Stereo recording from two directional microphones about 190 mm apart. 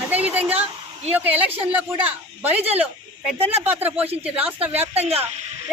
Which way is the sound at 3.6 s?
10° right (ahead or behind).